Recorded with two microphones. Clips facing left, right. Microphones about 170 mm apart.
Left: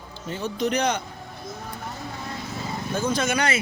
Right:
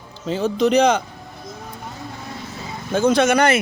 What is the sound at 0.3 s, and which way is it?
Speech, 90° right.